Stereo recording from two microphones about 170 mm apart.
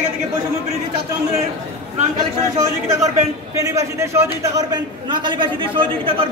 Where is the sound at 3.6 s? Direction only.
20° right (ahead or behind).